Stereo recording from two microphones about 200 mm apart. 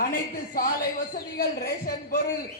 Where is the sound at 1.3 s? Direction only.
50° left (ahead or behind).